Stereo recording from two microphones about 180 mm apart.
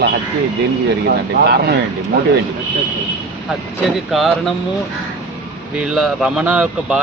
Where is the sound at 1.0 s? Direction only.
60° right (ahead or behind).